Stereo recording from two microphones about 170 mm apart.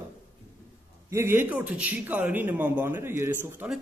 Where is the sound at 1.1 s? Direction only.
15° right (ahead or behind).